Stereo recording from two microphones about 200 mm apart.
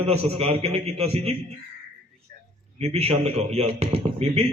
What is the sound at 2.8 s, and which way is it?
A man's voice, 30° right (ahead or behind).